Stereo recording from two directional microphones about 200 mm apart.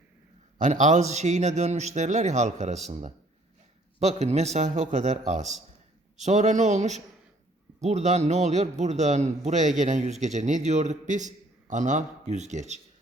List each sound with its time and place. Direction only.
0.6 s a man's voice: 40° right (ahead or behind)
4.0 s a man's voice: 35° right (ahead or behind)